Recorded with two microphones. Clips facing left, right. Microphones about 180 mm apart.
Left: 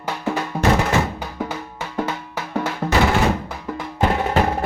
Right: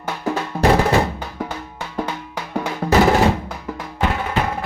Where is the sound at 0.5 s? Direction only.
Centre (ahead or behind).